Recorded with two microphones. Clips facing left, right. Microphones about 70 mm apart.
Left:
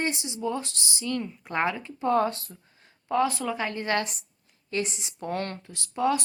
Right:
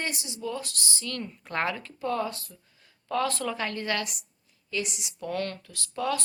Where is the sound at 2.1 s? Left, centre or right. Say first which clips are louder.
Left 9 dB; left.